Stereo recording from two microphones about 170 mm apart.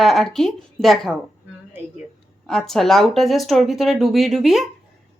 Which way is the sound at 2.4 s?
Centre (ahead or behind).